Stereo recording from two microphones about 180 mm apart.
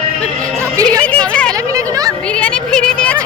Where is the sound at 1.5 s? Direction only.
20° right (ahead or behind).